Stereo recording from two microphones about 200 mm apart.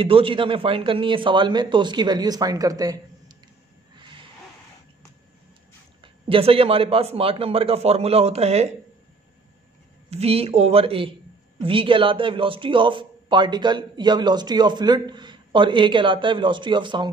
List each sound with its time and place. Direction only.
0.0 s a man's voice: 25° right (ahead or behind)
3.9 s a sound: 25° right (ahead or behind)
6.2 s a man's voice: 30° right (ahead or behind)
10.0 s a man's voice: 30° right (ahead or behind)